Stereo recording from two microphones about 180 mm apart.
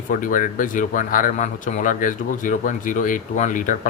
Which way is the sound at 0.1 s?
50° left (ahead or behind).